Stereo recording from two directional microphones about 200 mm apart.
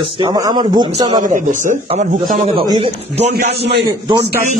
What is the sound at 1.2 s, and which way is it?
A man's voice, 40° right (ahead or behind).